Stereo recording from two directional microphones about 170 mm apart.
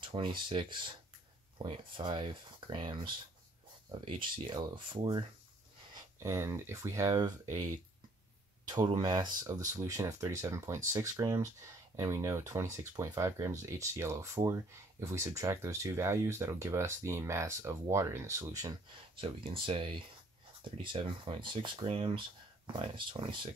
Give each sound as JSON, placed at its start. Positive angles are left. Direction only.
{"t": 0.0, "sound": "speech", "side_deg": -30}
{"t": 8.6, "sound": "speech", "side_deg": -25}
{"t": 19.2, "sound": "speech", "side_deg": -30}